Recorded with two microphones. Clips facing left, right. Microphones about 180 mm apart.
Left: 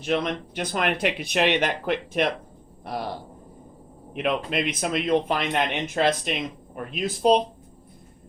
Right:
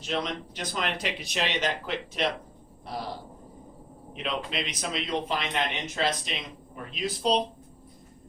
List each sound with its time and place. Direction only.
0.0 s speech: 55° left (ahead or behind)
4.1 s speech: 55° left (ahead or behind)